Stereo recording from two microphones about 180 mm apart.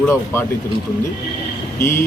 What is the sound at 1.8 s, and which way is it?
Speech, 15° left (ahead or behind).